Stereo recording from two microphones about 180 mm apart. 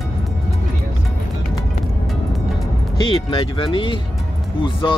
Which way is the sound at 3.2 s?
25° left (ahead or behind).